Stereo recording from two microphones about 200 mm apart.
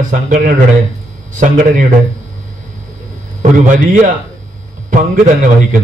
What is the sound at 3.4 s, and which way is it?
A man's voice, 40° right (ahead or behind).